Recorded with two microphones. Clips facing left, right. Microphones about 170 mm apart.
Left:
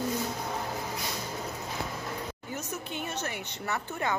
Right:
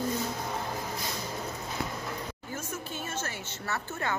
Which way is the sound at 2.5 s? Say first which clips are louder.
Even; 15° left (ahead or behind).